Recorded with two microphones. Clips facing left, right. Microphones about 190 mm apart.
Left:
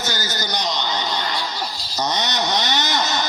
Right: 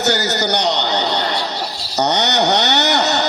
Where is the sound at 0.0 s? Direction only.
70° right (ahead or behind).